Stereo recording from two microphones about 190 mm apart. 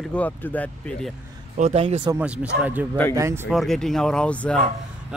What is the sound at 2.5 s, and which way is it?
Speech, 65° right (ahead or behind).